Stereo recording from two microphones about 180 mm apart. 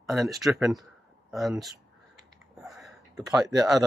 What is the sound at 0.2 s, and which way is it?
Speech, 20° right (ahead or behind).